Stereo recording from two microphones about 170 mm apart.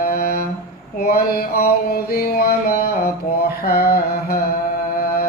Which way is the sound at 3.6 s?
65° left (ahead or behind).